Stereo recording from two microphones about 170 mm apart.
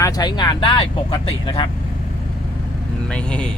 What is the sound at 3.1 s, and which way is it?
Speech, 5° left (ahead or behind).